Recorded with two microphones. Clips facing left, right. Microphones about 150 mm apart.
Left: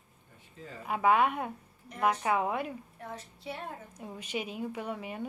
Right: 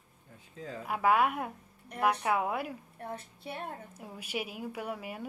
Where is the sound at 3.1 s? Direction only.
55° right (ahead or behind).